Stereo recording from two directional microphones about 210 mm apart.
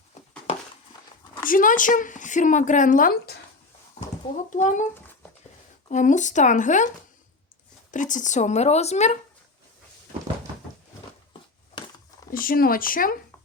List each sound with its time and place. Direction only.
1.5 s a woman's voice: 40° left (ahead or behind)
4.5 s a woman's voice: 35° left (ahead or behind)
5.9 s a woman's voice: 35° left (ahead or behind)
12.3 s speech: 45° left (ahead or behind)